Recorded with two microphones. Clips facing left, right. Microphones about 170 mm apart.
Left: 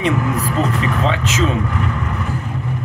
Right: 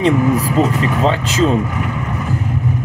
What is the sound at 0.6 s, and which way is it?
Speech, 35° right (ahead or behind).